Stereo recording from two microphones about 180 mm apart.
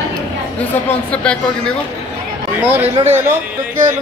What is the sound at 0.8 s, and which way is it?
Speech, 5° left (ahead or behind).